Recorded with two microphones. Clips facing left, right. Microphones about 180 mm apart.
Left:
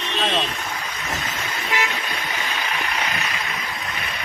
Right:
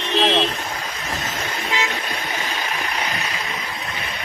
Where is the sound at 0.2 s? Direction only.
25° right (ahead or behind).